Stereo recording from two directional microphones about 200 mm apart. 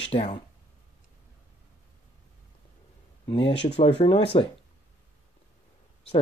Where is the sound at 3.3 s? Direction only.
25° left (ahead or behind).